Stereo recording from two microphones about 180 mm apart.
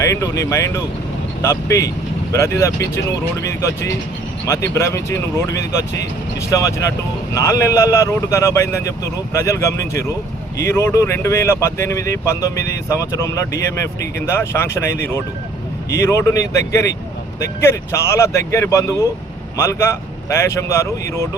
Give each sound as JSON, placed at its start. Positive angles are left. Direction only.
{"t": 0.1, "sound": "speech", "side_deg": 15}